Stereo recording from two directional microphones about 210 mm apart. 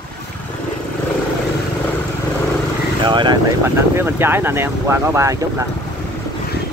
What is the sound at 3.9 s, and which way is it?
Speech, 10° right (ahead or behind).